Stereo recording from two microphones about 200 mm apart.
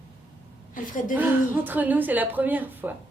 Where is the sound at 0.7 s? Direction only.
40° left (ahead or behind).